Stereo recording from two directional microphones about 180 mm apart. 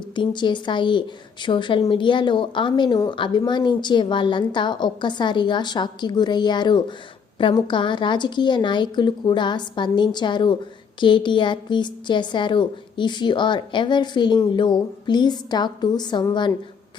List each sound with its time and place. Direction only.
0.2 s a woman's voice: 25° left (ahead or behind)